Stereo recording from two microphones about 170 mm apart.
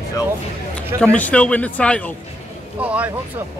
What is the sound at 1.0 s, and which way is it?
Speech, 5° left (ahead or behind).